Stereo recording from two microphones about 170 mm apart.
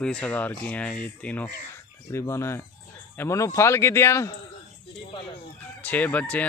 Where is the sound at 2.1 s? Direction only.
15° left (ahead or behind).